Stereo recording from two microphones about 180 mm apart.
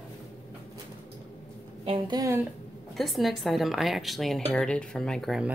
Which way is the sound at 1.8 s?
25° right (ahead or behind).